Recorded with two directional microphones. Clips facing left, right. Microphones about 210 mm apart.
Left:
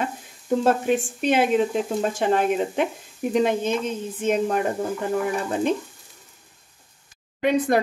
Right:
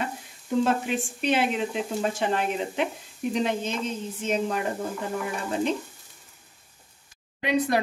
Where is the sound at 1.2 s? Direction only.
50° left (ahead or behind).